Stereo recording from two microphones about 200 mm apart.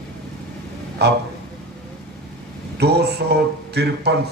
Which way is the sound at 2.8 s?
55° right (ahead or behind).